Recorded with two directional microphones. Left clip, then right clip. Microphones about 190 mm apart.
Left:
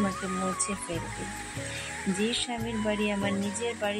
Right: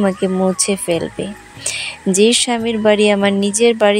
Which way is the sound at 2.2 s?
50° right (ahead or behind).